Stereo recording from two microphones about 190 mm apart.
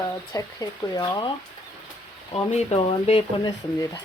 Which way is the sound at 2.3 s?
35° left (ahead or behind).